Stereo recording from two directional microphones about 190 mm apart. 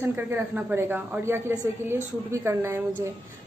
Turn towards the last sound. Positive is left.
turn(degrees=-15)  # may be behind; listen again after turning